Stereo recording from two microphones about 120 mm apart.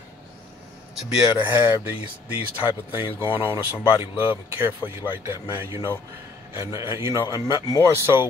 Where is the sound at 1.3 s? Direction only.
15° right (ahead or behind).